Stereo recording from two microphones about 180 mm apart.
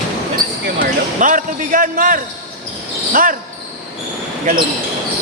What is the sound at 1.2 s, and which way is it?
Speech, 50° right (ahead or behind).